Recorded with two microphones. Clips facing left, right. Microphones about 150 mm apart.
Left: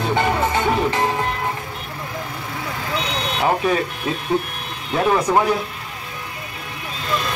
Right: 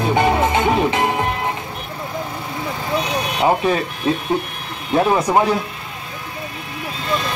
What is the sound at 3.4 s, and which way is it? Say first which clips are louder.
Vehicle: right 2 dB; 20° right (ahead or behind).